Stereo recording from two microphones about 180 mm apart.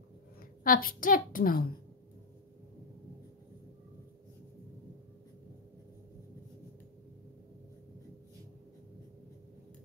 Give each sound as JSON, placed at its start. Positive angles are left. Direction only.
{"t": 0.7, "sound": "a woman's voice", "side_deg": 50}